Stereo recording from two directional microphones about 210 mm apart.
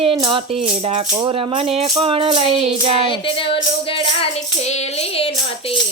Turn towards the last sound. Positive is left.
turn(degrees=25)  # may be behind; listen again after turning